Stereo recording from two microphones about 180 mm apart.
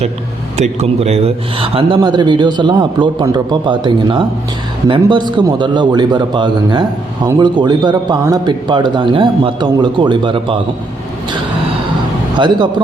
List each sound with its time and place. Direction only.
0.5 s a man's voice: 35° right (ahead or behind)